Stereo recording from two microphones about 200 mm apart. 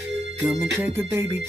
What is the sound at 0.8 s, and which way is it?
Speech, 10° right (ahead or behind).